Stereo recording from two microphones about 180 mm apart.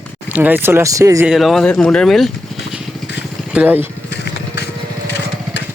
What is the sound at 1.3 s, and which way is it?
Speech, centre (ahead or behind).